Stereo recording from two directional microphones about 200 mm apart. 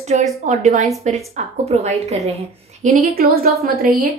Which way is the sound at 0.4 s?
40° right (ahead or behind).